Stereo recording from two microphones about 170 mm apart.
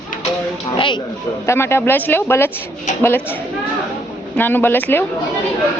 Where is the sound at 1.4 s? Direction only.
15° left (ahead or behind).